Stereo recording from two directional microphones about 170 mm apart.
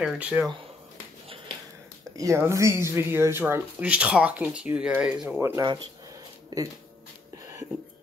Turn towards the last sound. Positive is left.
turn(degrees=-20)  # may be behind; listen again after turning